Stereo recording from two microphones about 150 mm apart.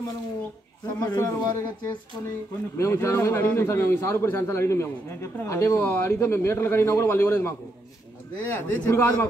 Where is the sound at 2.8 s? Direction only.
20° left (ahead or behind).